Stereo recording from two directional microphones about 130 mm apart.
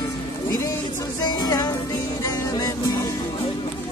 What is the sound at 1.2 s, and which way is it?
Music, 30° left (ahead or behind).